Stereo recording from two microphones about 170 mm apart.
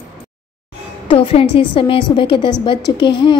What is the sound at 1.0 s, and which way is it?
Speech, 35° left (ahead or behind).